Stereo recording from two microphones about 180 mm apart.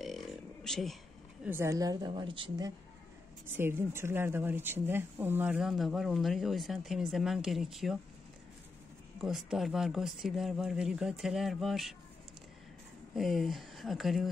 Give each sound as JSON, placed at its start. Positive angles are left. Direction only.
{"t": 0.0, "sound": "a sound", "side_deg": 0}
{"t": 1.4, "sound": "a woman's voice", "side_deg": -15}
{"t": 3.5, "sound": "speech", "side_deg": -15}
{"t": 9.2, "sound": "speech", "side_deg": 0}
{"t": 13.1, "sound": "speech", "side_deg": 0}